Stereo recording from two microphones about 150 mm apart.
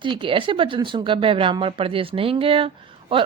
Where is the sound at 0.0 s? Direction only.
35° right (ahead or behind).